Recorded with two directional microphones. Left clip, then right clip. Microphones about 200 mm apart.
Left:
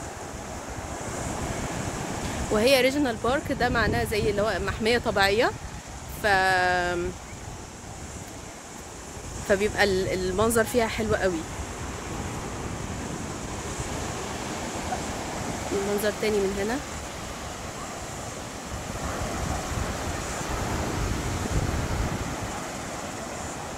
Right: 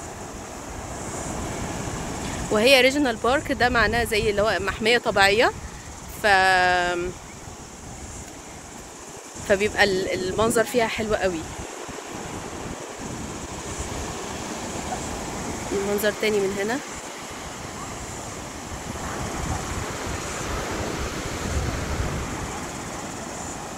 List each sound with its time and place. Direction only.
2.5 s speech: centre (ahead or behind)
9.5 s speech: 5° left (ahead or behind)
16.0 s speech: 5° right (ahead or behind)
19.8 s vehicle: 55° left (ahead or behind)